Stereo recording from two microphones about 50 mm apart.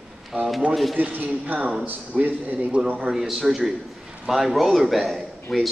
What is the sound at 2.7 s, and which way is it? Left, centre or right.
Speech, right.